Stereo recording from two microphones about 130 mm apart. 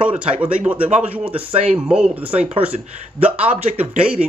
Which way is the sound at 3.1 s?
55° right (ahead or behind).